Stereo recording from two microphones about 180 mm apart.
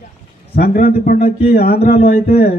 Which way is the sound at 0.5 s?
60° left (ahead or behind).